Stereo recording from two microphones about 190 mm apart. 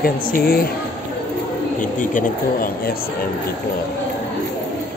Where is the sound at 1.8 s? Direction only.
45° left (ahead or behind).